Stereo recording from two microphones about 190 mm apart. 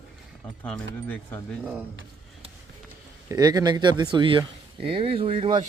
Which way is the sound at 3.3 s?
20° right (ahead or behind).